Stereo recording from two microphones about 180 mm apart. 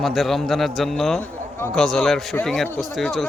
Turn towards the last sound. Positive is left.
turn(degrees=0)  # may be behind; listen again after turning